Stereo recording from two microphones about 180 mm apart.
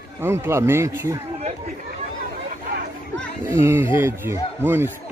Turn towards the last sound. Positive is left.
turn(degrees=-10)  # may be behind; listen again after turning